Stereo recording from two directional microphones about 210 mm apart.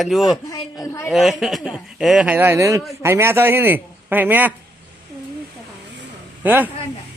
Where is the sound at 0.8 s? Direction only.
15° left (ahead or behind).